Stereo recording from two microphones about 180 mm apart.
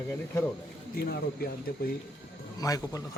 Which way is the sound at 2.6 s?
20° left (ahead or behind).